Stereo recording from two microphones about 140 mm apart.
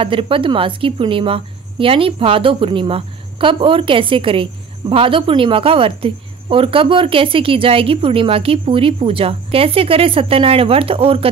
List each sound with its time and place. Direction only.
0.0 s a woman's voice: 40° right (ahead or behind)